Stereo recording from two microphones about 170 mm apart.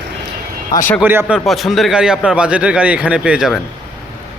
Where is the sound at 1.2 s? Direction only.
Centre (ahead or behind).